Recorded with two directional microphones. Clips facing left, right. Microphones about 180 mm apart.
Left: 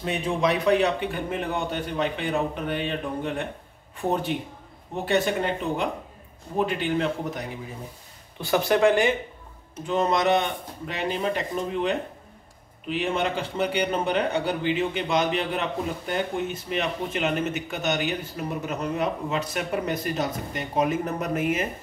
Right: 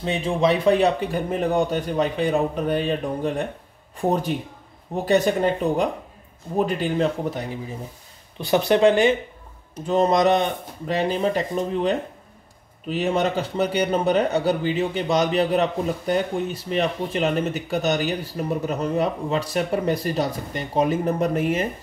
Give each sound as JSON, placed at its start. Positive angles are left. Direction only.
{"t": 0.0, "sound": "a man's voice", "side_deg": -30}
{"t": 8.5, "sound": "speech", "side_deg": -20}
{"t": 9.8, "sound": "a man's voice", "side_deg": -40}